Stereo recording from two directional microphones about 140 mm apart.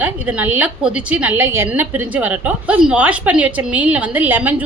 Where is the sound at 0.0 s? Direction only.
10° right (ahead or behind).